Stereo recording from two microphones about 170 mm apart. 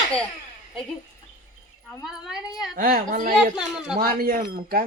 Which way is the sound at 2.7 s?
55° right (ahead or behind).